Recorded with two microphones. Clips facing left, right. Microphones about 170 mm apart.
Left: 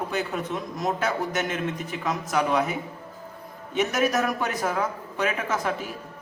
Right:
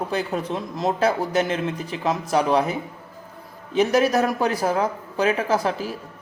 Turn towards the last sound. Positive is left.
turn(degrees=-35)  # may be behind; listen again after turning